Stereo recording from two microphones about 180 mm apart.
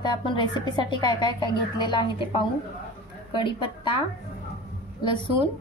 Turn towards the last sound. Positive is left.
turn(degrees=25)  # may be behind; listen again after turning